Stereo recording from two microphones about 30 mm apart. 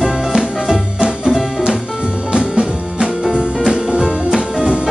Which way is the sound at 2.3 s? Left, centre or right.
Right.